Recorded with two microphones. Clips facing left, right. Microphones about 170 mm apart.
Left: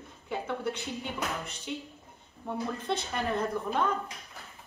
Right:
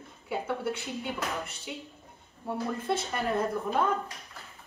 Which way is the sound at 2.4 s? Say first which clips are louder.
Right 2 dB; 5° right (ahead or behind).